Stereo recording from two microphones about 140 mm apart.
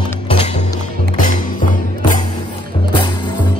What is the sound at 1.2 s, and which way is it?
Music, 70° left (ahead or behind).